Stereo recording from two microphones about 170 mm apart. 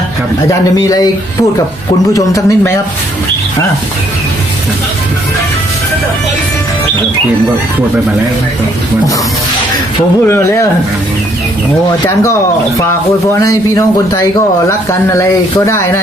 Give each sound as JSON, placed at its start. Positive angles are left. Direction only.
{"t": 0.8, "sound": "a man's voice", "side_deg": 20}
{"t": 2.1, "sound": "a man's voice", "side_deg": 20}
{"t": 10.2, "sound": "speech", "side_deg": 15}
{"t": 12.0, "sound": "a man's voice", "side_deg": 15}